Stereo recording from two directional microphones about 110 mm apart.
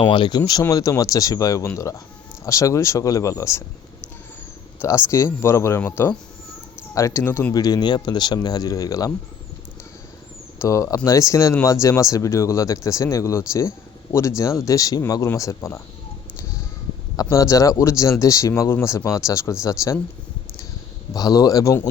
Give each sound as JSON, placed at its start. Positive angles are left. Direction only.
{"t": 0.0, "sound": "speech", "side_deg": 45}
{"t": 4.8, "sound": "speech", "side_deg": 25}
{"t": 7.5, "sound": "speech", "side_deg": 35}
{"t": 10.6, "sound": "speech", "side_deg": 30}
{"t": 17.2, "sound": "speech", "side_deg": 30}
{"t": 21.1, "sound": "speech", "side_deg": 35}